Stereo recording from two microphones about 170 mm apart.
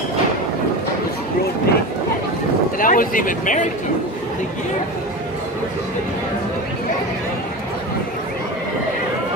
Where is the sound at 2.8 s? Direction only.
55° left (ahead or behind).